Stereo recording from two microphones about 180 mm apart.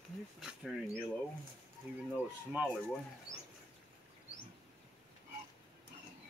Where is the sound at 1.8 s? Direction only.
10° right (ahead or behind).